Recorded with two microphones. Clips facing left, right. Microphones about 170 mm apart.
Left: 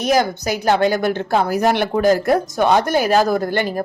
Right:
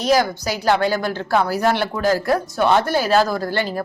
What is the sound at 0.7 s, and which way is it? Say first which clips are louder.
A woman's voice: left 2 dB; 20° left (ahead or behind).